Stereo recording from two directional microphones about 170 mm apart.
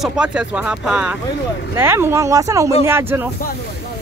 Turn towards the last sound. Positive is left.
turn(degrees=-15)  # may be behind; listen again after turning